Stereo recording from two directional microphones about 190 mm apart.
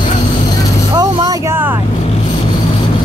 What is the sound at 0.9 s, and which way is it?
Speech, 20° right (ahead or behind).